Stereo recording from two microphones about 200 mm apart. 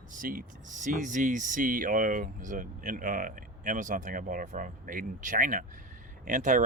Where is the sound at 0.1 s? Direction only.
45° right (ahead or behind).